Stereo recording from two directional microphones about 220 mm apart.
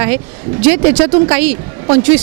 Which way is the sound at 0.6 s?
10° right (ahead or behind).